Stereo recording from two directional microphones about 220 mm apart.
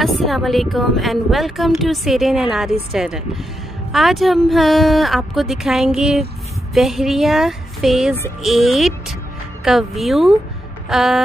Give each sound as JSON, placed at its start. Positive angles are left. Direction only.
{"t": 0.0, "sound": "a woman's voice", "side_deg": 0}